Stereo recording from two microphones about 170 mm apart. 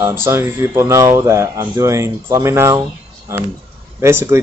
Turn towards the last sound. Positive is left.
turn(degrees=-15)  # may be behind; listen again after turning